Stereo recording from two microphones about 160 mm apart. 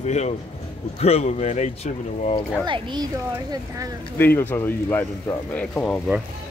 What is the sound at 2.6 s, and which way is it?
Speech, 30° right (ahead or behind).